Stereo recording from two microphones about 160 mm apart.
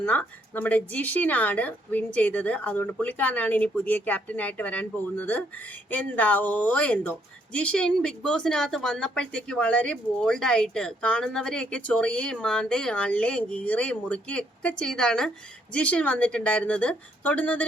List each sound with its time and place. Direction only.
0.0 s speech: 10° left (ahead or behind)